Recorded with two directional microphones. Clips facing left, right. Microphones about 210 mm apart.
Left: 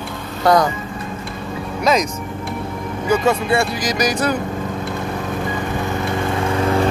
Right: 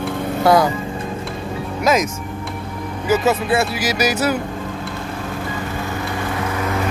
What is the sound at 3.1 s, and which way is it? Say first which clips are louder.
Speech: even; 5° right (ahead or behind).